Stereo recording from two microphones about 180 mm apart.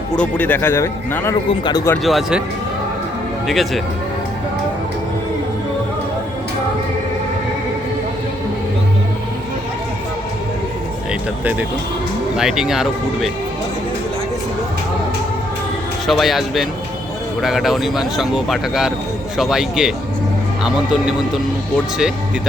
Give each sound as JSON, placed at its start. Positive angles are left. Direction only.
{"t": 0.2, "sound": "speech", "side_deg": 10}
{"t": 2.0, "sound": "speech", "side_deg": 0}
{"t": 3.4, "sound": "speech", "side_deg": 0}
{"t": 12.4, "sound": "speech", "side_deg": -5}
{"t": 16.0, "sound": "speech", "side_deg": 0}